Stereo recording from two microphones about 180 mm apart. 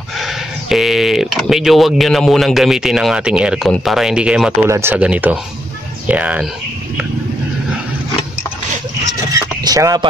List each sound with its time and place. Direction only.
0.2 s speech: centre (ahead or behind)
9.3 s vehicle: 20° right (ahead or behind)